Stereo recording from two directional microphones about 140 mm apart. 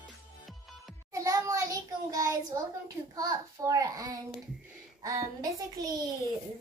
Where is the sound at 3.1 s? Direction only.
25° right (ahead or behind).